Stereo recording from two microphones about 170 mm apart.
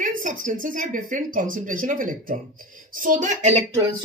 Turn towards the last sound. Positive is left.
turn(degrees=-40)  # may be behind; listen again after turning